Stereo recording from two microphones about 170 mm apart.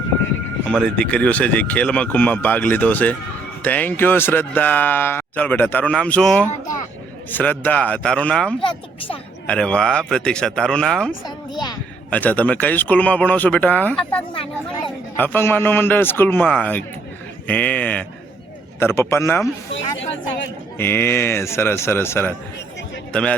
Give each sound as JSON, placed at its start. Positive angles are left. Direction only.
{"t": 0.7, "sound": "speech", "side_deg": 5}
{"t": 12.1, "sound": "speech", "side_deg": 10}
{"t": 19.7, "sound": "speech", "side_deg": 90}
{"t": 20.7, "sound": "speech", "side_deg": 15}